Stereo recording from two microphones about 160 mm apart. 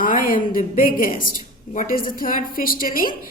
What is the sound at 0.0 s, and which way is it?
A woman's voice, 60° left (ahead or behind).